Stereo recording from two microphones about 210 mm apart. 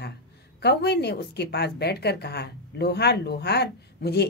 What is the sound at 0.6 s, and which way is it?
A woman's voice, 50° left (ahead or behind).